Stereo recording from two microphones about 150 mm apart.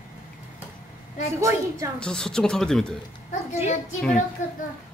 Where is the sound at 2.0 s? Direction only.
5° left (ahead or behind).